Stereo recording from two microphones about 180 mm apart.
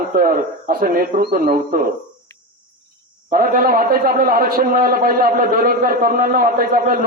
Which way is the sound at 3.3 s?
50° right (ahead or behind).